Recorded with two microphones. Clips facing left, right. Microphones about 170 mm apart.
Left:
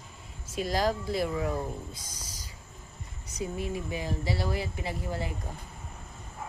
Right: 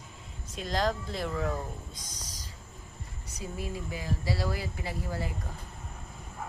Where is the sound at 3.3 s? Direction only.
20° left (ahead or behind).